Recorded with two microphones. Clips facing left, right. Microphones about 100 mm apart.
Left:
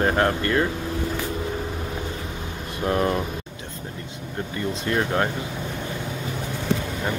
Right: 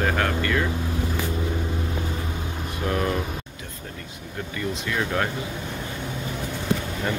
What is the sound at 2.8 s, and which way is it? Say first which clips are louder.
Speech: left 3 dB; 30° left (ahead or behind).